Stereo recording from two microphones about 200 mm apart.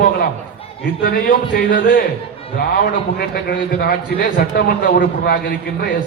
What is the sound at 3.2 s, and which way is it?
A man's voice, 50° left (ahead or behind).